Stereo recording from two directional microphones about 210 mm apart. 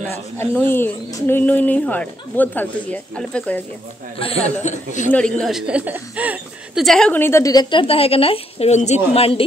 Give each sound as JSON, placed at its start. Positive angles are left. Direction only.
{"t": 0.1, "sound": "speech", "side_deg": 10}
{"t": 4.6, "sound": "speech", "side_deg": 35}
{"t": 5.4, "sound": "speech", "side_deg": 0}